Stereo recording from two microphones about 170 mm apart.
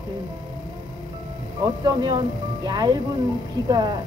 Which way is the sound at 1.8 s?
25° right (ahead or behind).